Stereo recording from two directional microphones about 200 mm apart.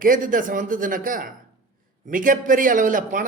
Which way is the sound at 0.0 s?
40° right (ahead or behind).